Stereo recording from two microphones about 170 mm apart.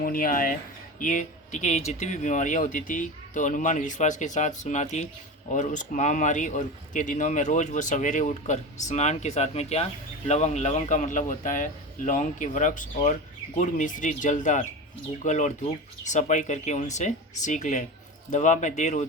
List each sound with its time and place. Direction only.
0.0 s speech: 55° left (ahead or behind)